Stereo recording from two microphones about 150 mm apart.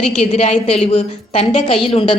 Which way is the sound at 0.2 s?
45° left (ahead or behind).